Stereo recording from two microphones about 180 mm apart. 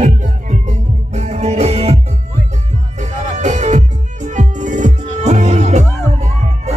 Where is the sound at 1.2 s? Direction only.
40° right (ahead or behind).